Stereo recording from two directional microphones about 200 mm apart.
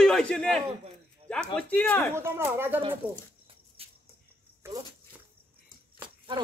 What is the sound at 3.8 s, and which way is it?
Music, 30° right (ahead or behind).